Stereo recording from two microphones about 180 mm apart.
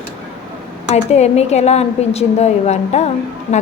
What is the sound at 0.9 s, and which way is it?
A woman's voice, 35° left (ahead or behind).